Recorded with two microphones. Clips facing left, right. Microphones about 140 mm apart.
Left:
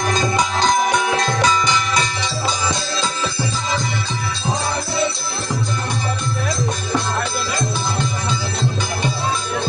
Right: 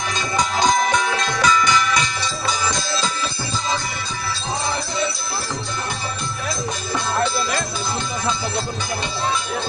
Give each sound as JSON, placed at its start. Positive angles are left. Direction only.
{"t": 0.9, "sound": "music", "side_deg": 20}